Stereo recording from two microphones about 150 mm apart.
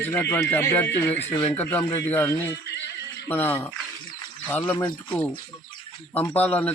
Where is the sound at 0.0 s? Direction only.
15° left (ahead or behind).